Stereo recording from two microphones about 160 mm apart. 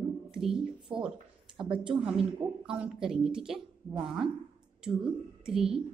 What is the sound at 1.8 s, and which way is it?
A woman's voice, 5° right (ahead or behind).